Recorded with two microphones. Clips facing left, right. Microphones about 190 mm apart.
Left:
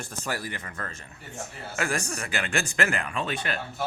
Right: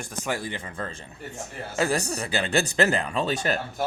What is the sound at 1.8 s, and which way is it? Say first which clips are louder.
Speech: right 5 dB; 35° right (ahead or behind).